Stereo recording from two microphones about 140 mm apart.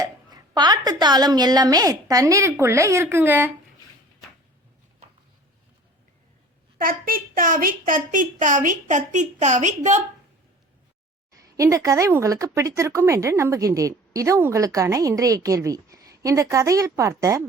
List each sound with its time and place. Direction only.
0.0 s speech: 30° right (ahead or behind)
6.7 s a woman's voice: 90° right; by 10.0 s 60° right (ahead or behind)
11.3 s speech: 25° right (ahead or behind)